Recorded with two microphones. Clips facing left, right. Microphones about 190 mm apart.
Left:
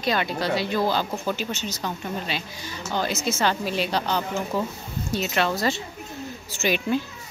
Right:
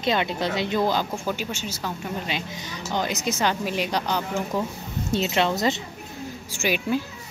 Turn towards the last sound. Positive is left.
turn(degrees=-10)  # may be behind; listen again after turning